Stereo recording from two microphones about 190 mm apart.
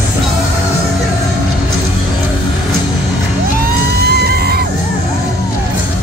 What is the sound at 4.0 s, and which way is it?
Music, 60° right (ahead or behind).